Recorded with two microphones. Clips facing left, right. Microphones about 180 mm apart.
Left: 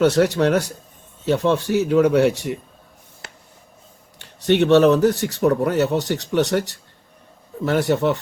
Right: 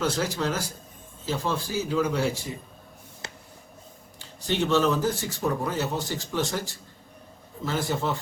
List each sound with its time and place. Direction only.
0.0 s speech: 70° left (ahead or behind)
4.2 s speech: 70° left (ahead or behind)